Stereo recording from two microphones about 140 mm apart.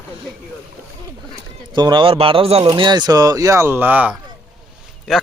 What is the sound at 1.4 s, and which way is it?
Speech, 30° right (ahead or behind).